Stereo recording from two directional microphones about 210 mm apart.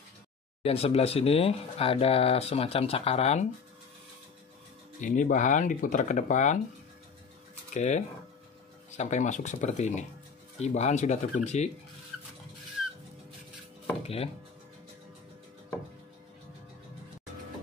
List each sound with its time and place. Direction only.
0.7 s speech: 30° left (ahead or behind)
5.0 s speech: 35° left (ahead or behind)
7.7 s speech: 35° left (ahead or behind)
14.0 s speech: 30° left (ahead or behind)